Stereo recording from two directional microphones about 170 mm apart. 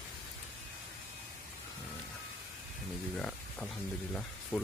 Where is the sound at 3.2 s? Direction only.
5° left (ahead or behind).